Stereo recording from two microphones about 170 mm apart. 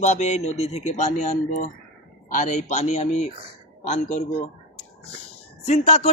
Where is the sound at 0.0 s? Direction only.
45° left (ahead or behind).